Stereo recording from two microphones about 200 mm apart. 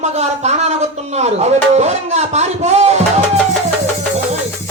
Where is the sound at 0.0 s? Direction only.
35° right (ahead or behind).